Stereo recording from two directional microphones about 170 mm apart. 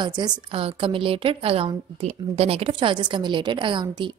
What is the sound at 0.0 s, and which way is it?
A woman's voice, 25° right (ahead or behind).